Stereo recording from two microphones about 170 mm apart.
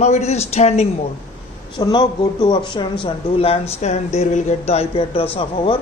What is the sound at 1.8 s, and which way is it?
A man's voice, 25° left (ahead or behind).